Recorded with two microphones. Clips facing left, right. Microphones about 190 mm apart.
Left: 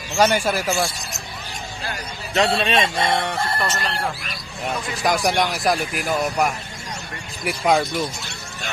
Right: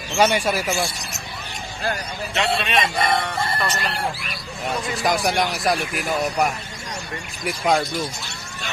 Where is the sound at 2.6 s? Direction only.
30° left (ahead or behind).